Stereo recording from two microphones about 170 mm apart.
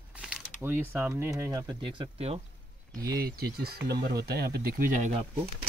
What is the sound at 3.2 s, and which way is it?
Speech, 65° right (ahead or behind).